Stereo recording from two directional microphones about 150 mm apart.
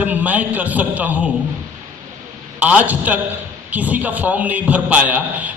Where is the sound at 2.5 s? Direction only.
10° right (ahead or behind).